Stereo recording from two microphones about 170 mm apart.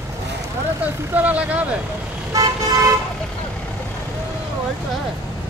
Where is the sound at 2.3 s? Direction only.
20° right (ahead or behind).